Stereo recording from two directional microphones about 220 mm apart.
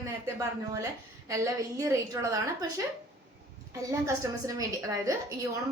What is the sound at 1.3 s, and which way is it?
A woman's voice, 15° right (ahead or behind).